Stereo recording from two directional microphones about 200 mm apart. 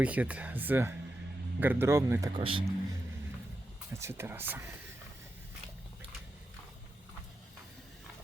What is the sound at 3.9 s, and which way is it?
Speech, 15° right (ahead or behind).